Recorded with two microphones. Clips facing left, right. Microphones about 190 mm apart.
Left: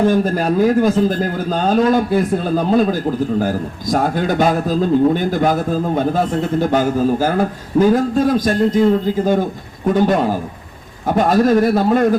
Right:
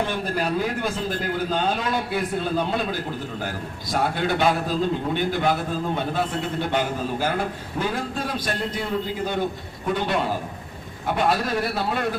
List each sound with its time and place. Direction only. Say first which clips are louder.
0.0 s a man's voice: left 10 dB; 45° left (ahead or behind)